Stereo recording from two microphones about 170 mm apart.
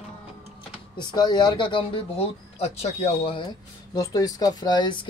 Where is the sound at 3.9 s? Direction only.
20° left (ahead or behind).